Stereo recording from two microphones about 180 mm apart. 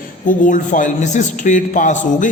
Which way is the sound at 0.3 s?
45° left (ahead or behind).